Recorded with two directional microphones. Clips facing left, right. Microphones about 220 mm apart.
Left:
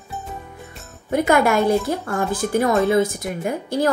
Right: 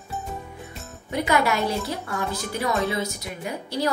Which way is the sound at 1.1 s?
50° left (ahead or behind).